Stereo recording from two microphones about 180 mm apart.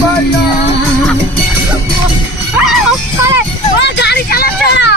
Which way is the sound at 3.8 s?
65° left (ahead or behind).